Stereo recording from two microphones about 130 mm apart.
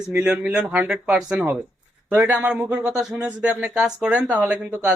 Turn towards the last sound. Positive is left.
turn(degrees=-10)  # may be behind; listen again after turning